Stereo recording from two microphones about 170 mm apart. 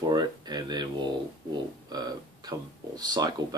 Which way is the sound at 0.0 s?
25° right (ahead or behind).